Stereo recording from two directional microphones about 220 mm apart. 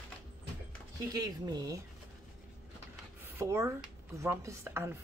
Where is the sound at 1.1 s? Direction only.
15° right (ahead or behind).